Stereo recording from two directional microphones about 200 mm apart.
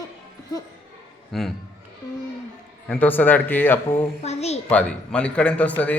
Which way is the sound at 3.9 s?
30° left (ahead or behind).